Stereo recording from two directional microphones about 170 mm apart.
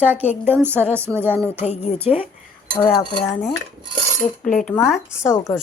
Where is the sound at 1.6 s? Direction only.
40° left (ahead or behind).